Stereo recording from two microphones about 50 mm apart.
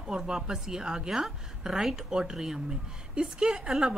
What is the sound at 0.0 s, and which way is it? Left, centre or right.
Speech, centre.